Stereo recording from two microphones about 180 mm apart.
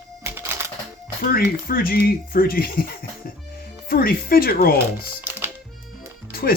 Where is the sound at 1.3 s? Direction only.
55° left (ahead or behind).